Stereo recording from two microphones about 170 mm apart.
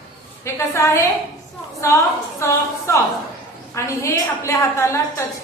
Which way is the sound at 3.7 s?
15° left (ahead or behind).